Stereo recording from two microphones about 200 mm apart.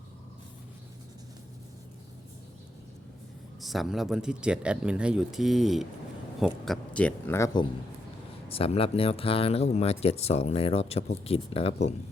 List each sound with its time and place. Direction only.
3.6 s speech: centre (ahead or behind); by 7.7 s 20° left (ahead or behind)
8.4 s speech: 30° left (ahead or behind)